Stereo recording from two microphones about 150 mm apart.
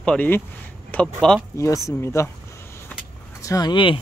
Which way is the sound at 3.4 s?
25° left (ahead or behind).